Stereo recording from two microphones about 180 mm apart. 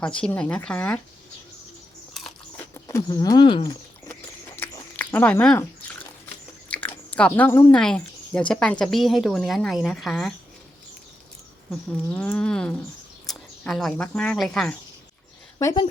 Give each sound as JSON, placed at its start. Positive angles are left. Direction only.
{"t": 0.0, "sound": "a woman's voice", "side_deg": 5}
{"t": 2.7, "sound": "speech", "side_deg": 20}
{"t": 4.1, "sound": "a sound", "side_deg": 10}
{"t": 6.2, "sound": "chewing", "side_deg": 10}
{"t": 7.8, "sound": "a woman's voice", "side_deg": 5}
{"t": 11.7, "sound": "speech", "side_deg": 5}
{"t": 15.5, "sound": "speech", "side_deg": 25}